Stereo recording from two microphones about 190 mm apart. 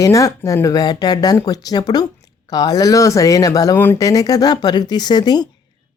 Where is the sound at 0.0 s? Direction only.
15° left (ahead or behind).